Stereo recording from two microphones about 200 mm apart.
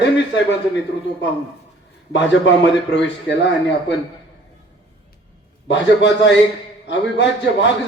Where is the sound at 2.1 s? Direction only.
65° left (ahead or behind).